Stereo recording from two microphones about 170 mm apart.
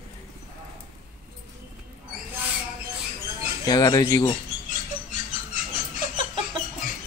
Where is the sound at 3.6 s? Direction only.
25° left (ahead or behind).